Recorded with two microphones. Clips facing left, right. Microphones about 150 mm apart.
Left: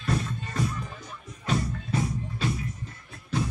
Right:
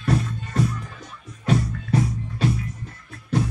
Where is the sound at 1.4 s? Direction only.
65° right (ahead or behind).